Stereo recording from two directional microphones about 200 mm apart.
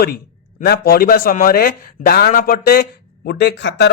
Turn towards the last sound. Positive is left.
turn(degrees=60)  # may be behind; listen again after turning